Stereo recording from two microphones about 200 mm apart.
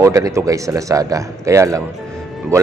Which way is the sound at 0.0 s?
15° right (ahead or behind).